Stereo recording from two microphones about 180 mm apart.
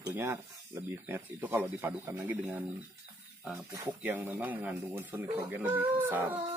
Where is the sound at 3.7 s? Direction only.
10° right (ahead or behind).